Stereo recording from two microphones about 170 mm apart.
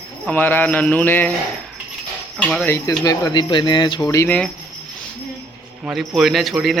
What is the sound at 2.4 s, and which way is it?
Speech, 10° left (ahead or behind).